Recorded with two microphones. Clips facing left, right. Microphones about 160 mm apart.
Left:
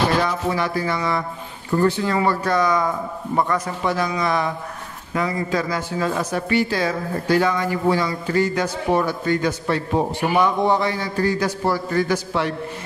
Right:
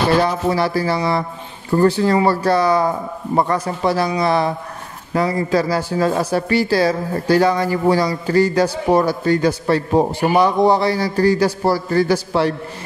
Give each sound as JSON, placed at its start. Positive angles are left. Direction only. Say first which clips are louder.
{"t": 0.1, "sound": "speech", "louder": "right 5 dB", "side_deg": -35}